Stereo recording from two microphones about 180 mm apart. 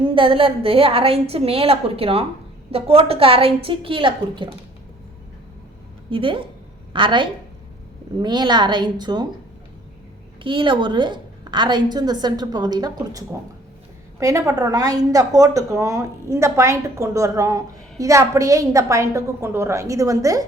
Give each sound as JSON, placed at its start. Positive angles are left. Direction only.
{"t": 0.1, "sound": "a woman's voice", "side_deg": -30}
{"t": 6.1, "sound": "a woman's voice", "side_deg": -30}
{"t": 10.4, "sound": "a woman's voice", "side_deg": -30}